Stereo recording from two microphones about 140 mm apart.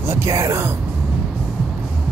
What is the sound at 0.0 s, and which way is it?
Speech, 20° right (ahead or behind).